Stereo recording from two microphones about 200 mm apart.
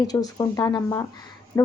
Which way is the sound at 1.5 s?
15° left (ahead or behind).